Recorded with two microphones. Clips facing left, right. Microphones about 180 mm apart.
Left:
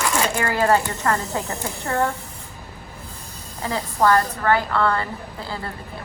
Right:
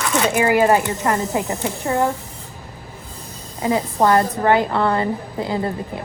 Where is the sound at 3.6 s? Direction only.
20° right (ahead or behind).